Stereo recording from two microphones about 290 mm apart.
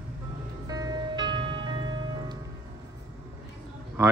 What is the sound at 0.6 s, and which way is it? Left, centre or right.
Music, centre.